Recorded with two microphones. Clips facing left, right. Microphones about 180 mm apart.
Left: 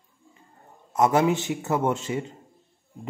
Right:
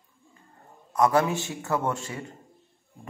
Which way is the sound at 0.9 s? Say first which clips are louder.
Left 2 dB; 20° left (ahead or behind).